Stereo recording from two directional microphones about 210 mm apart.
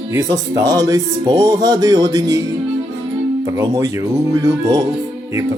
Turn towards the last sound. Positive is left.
turn(degrees=-15)  # may be behind; listen again after turning